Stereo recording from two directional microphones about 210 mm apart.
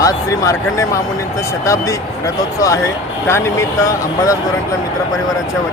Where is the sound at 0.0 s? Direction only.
15° left (ahead or behind).